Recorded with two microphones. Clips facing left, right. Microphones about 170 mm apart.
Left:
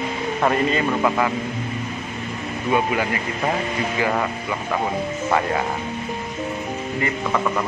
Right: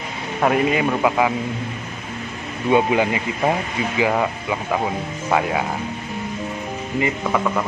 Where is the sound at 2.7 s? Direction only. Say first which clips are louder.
Right 4 dB; 20° right (ahead or behind).